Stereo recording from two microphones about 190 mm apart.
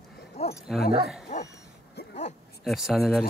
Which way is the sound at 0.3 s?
35° left (ahead or behind).